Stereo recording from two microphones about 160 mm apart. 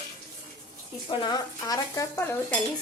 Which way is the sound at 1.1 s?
25° left (ahead or behind).